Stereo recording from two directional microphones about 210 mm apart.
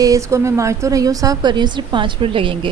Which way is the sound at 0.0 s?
15° right (ahead or behind).